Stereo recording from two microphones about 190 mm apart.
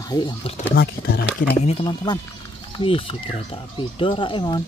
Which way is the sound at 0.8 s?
55° left (ahead or behind).